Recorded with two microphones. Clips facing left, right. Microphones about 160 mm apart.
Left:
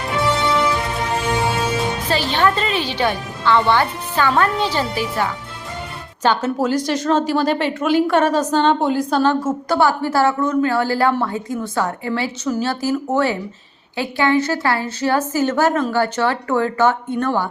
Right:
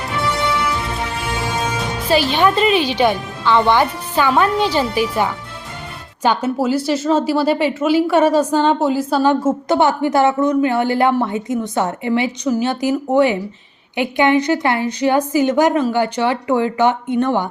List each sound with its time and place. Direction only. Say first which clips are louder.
2.0 s a woman's voice: right 5 dB; 15° right (ahead or behind)
9.4 s a woman's voice: right 2 dB; 25° right (ahead or behind)